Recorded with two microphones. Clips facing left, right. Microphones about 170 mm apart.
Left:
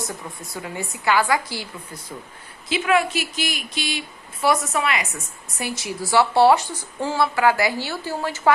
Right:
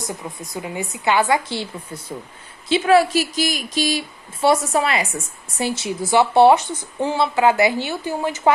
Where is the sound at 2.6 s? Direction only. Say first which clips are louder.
Right 5 dB; 30° right (ahead or behind).